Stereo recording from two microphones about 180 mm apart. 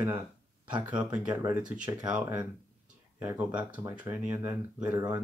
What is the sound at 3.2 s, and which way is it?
Speech, 15° right (ahead or behind).